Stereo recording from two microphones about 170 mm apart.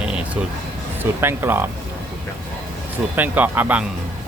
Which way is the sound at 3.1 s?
10° right (ahead or behind).